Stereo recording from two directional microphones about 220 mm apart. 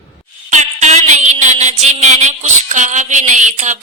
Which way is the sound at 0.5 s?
30° right (ahead or behind).